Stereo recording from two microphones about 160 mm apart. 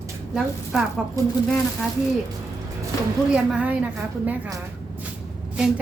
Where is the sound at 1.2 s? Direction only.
20° right (ahead or behind).